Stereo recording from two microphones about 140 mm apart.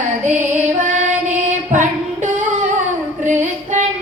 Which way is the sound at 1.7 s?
60° right (ahead or behind).